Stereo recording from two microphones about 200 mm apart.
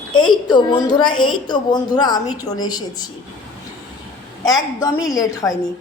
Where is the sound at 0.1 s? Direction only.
25° left (ahead or behind).